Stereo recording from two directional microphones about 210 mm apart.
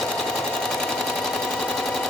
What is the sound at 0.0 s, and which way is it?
Sewing machine, centre (ahead or behind).